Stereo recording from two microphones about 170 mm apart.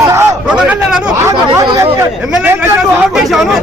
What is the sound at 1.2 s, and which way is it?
Speech, 20° right (ahead or behind).